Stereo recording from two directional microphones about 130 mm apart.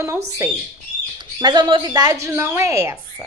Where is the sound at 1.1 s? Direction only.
35° right (ahead or behind).